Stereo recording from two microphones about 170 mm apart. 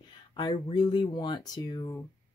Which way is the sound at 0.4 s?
25° left (ahead or behind).